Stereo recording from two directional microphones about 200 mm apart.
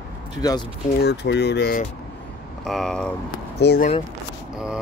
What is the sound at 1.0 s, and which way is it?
Speech, 55° left (ahead or behind).